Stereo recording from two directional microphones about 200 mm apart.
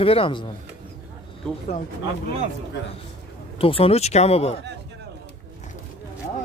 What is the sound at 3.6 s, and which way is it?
Speech, 30° left (ahead or behind).